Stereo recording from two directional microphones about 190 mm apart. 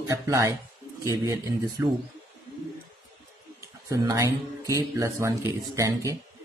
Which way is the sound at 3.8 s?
15° right (ahead or behind).